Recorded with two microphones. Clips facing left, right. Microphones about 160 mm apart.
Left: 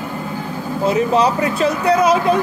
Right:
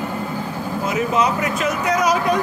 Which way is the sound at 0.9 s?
30° left (ahead or behind).